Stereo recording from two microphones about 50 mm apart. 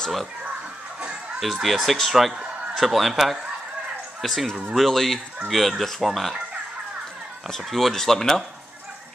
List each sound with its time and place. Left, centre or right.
1.4 s speech: centre
7.4 s speech: centre